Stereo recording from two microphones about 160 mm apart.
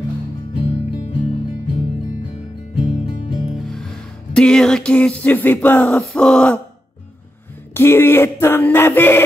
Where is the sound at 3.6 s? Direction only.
5° left (ahead or behind).